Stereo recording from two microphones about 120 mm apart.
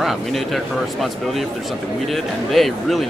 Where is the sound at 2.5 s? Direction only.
Centre (ahead or behind).